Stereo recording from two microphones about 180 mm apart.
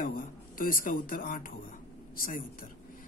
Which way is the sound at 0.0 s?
50° left (ahead or behind).